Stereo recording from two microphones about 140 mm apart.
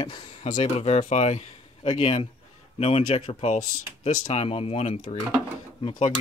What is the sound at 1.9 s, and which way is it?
Speech, 40° left (ahead or behind).